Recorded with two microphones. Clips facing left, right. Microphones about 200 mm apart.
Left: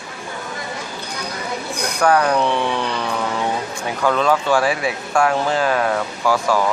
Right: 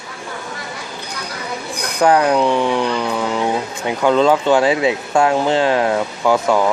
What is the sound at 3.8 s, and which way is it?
Speech, 20° right (ahead or behind).